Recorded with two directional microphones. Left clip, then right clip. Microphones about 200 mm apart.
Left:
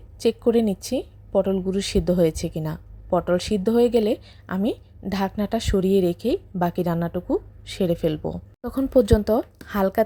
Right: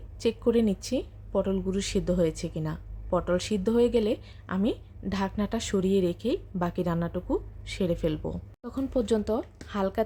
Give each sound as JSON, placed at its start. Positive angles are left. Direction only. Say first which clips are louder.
{"t": 0.2, "sound": "a woman's voice", "louder": "left 5 dB", "side_deg": 20}